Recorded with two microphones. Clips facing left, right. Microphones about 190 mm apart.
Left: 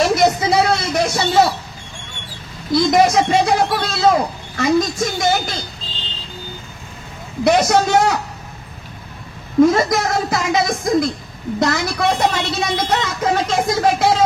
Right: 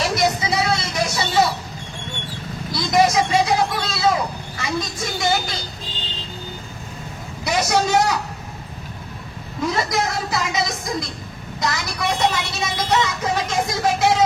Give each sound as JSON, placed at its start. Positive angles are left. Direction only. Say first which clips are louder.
{"t": 0.0, "sound": "a sound", "louder": "left 6 dB", "side_deg": 55}
{"t": 2.7, "sound": "a woman's voice", "louder": "left 4 dB", "side_deg": 55}
{"t": 7.4, "sound": "a woman's voice", "louder": "left 6 dB", "side_deg": 55}
{"t": 9.6, "sound": "a woman's voice", "louder": "left 9 dB", "side_deg": 50}